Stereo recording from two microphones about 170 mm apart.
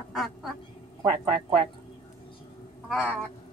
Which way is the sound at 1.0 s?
35° right (ahead or behind).